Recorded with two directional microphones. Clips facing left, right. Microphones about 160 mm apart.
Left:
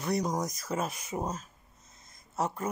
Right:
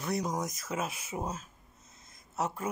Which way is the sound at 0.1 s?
5° right (ahead or behind).